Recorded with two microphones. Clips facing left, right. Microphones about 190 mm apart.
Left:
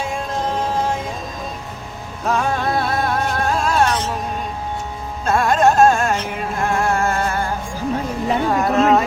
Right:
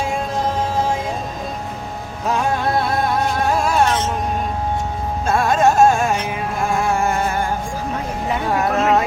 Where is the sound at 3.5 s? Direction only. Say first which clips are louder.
Even; 15° right (ahead or behind).